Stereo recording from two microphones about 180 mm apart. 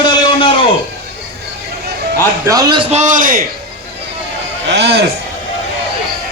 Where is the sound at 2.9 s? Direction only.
40° right (ahead or behind).